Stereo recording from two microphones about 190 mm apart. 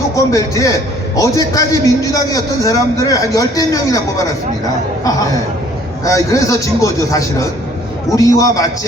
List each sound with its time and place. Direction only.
0.2 s a man's voice: 15° left (ahead or behind)
6.1 s a man's voice: 15° left (ahead or behind)